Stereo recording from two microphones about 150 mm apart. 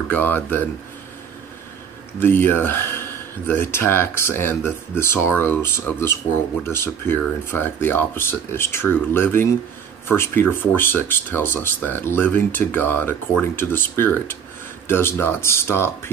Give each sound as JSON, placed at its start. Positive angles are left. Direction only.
{"t": 0.1, "sound": "speech", "side_deg": 15}
{"t": 2.1, "sound": "speech", "side_deg": 15}